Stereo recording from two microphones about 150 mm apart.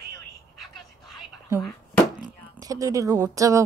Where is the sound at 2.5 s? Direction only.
25° right (ahead or behind).